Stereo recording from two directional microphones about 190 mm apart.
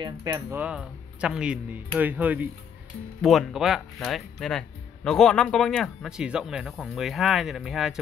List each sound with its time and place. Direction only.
0.0 s speech: 15° right (ahead or behind); by 8.0 s centre (ahead or behind)